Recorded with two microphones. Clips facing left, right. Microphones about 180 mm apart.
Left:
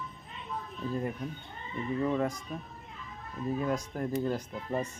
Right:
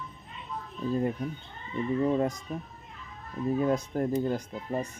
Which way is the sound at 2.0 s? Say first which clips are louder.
Right 3 dB; 20° right (ahead or behind).